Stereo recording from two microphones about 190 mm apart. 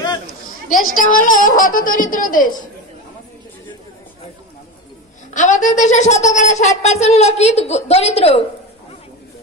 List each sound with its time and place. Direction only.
0.9 s speech: 45° left (ahead or behind)
5.3 s speech: 40° left (ahead or behind)